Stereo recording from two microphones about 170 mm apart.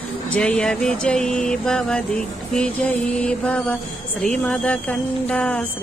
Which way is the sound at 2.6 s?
5° left (ahead or behind).